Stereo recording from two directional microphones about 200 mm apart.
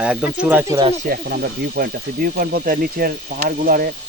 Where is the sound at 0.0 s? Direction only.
5° right (ahead or behind).